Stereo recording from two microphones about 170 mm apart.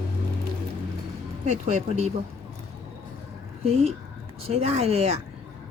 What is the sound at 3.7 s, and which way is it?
Speech, 35° right (ahead or behind).